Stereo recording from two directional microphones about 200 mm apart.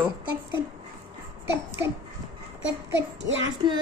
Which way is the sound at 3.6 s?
25° right (ahead or behind).